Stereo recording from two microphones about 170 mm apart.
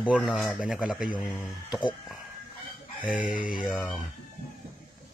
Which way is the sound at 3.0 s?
5° right (ahead or behind).